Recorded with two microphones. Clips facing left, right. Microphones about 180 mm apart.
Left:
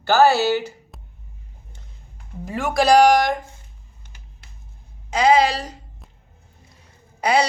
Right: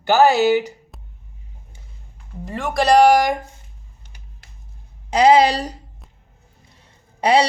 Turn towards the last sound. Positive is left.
turn(degrees=-30)  # may be behind; listen again after turning